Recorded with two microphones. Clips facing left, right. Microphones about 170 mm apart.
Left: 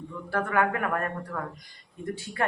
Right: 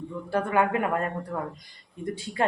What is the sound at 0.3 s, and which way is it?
A woman's voice, 20° right (ahead or behind).